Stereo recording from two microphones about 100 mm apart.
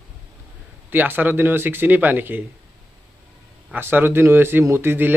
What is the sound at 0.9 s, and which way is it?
Speech, 20° right (ahead or behind).